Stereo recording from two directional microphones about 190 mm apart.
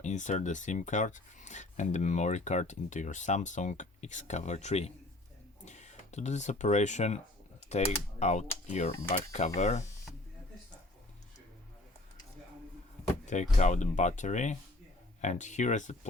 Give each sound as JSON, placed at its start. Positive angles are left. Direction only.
{"t": 0.0, "sound": "speech", "side_deg": 40}
{"t": 13.2, "sound": "speech", "side_deg": 40}